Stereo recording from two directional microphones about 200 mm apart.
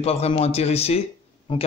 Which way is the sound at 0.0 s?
30° left (ahead or behind).